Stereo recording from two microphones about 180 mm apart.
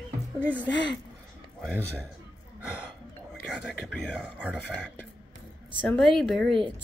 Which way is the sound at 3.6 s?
Centre (ahead or behind).